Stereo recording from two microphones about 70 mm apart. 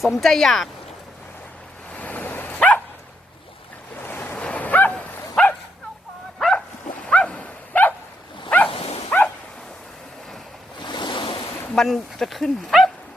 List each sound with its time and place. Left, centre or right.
0.2 s speech: centre
1.9 s waves: left
3.9 s waves: left
4.4 s bow-wow: centre
6.4 s dog: centre
10.8 s waves: left
11.7 s speech: centre